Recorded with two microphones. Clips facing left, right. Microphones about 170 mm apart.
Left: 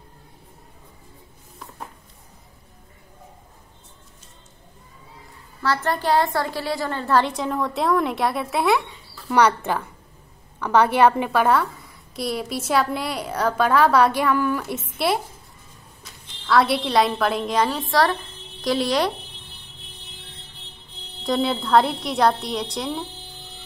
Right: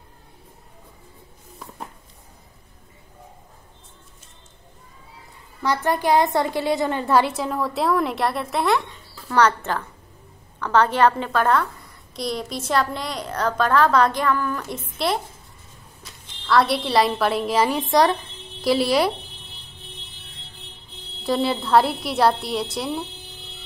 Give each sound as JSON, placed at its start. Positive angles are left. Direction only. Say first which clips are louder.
{"t": 5.6, "sound": "a woman's voice", "louder": "right 1 dB", "side_deg": -15}
{"t": 18.6, "sound": "speech", "louder": "right 2 dB", "side_deg": -5}
{"t": 21.2, "sound": "a woman's voice", "louder": "even", "side_deg": 0}